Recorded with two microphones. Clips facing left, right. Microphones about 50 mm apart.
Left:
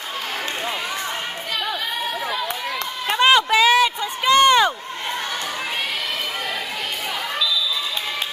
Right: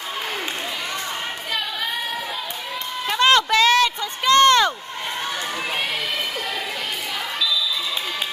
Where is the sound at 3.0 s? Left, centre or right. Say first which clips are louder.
Left 1 dB; centre.